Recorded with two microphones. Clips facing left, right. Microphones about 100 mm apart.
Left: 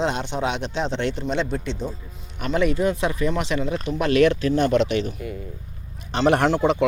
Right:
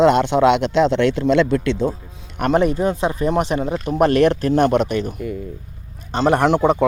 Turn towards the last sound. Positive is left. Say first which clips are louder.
# right 4 dB
turn(degrees=-50)  # may be behind; listen again after turning